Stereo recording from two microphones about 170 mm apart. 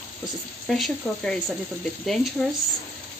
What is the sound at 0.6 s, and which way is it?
Speech, centre (ahead or behind).